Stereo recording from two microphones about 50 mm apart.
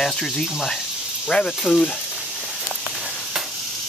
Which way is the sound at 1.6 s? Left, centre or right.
Centre.